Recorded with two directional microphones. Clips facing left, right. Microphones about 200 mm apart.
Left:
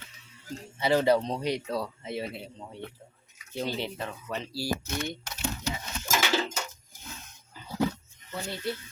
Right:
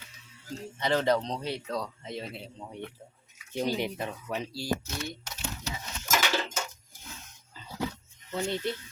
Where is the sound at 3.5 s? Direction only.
15° right (ahead or behind).